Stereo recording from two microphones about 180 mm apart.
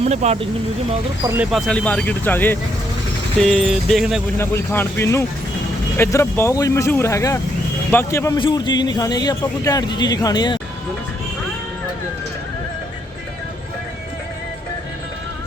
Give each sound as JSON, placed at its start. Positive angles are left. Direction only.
{"t": 0.0, "sound": "speech", "side_deg": -35}
{"t": 1.2, "sound": "speech", "side_deg": -15}
{"t": 1.5, "sound": "speech", "side_deg": 0}
{"t": 4.4, "sound": "a man's voice", "side_deg": 15}